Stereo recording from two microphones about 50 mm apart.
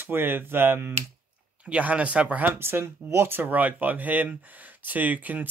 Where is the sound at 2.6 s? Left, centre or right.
Right.